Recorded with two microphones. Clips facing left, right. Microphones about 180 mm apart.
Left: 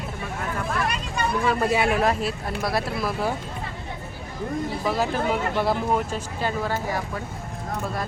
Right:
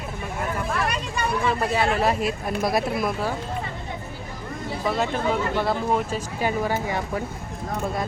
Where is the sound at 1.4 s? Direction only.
5° left (ahead or behind).